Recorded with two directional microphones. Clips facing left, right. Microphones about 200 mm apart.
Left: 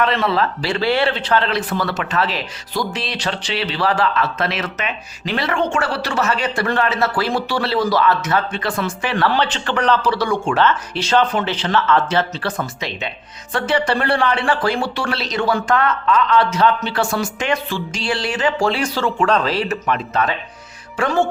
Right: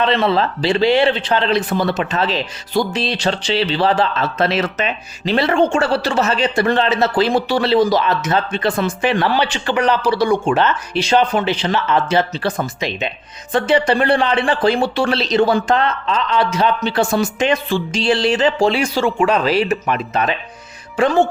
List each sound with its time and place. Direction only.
0.0 s a man's voice: 25° right (ahead or behind)